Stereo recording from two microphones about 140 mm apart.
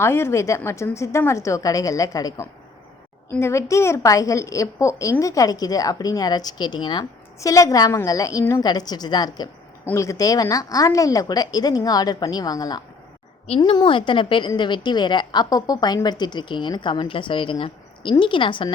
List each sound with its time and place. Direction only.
0.0 s a woman's voice: 20° left (ahead or behind); by 18.7 s 35° left (ahead or behind)